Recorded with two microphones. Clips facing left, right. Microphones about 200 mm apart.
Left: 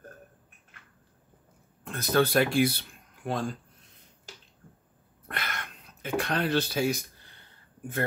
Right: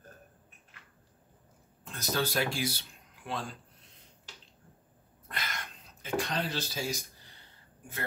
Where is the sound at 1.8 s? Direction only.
55° left (ahead or behind).